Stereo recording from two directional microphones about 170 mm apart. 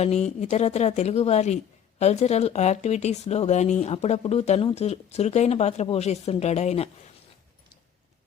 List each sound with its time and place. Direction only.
0.0 s speech: 40° left (ahead or behind)